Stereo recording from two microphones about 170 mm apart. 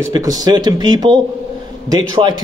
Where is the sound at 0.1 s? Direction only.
20° right (ahead or behind).